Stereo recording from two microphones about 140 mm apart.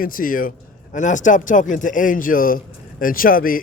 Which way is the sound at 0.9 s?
65° left (ahead or behind).